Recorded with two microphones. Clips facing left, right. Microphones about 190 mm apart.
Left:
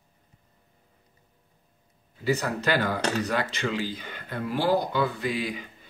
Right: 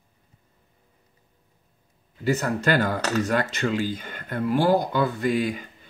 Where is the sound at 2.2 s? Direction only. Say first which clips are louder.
Right 3 dB; 50° right (ahead or behind).